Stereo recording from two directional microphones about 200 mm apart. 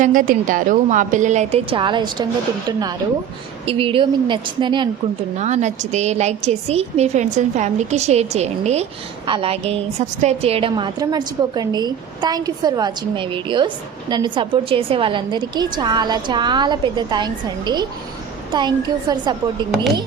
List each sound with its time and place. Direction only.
0.0 s a woman's voice: 40° right (ahead or behind); by 2.2 s 20° right (ahead or behind)
3.7 s a woman's voice: 25° right (ahead or behind)
5.4 s a woman's voice: 35° right (ahead or behind)